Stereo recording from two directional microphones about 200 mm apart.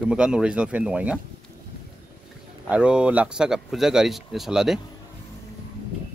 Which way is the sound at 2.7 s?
5° right (ahead or behind).